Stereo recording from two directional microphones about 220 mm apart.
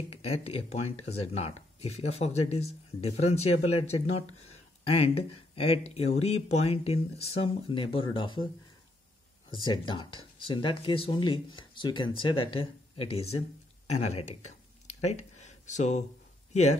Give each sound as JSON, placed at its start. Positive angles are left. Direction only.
{"t": 0.1, "sound": "speech", "side_deg": 25}
{"t": 9.5, "sound": "speech", "side_deg": 20}
{"t": 13.8, "sound": "a sound", "side_deg": 30}